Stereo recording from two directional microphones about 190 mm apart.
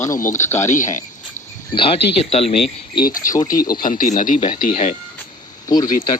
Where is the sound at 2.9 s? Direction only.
50° left (ahead or behind).